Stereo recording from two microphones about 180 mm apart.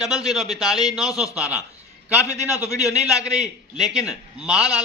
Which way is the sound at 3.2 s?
5° right (ahead or behind).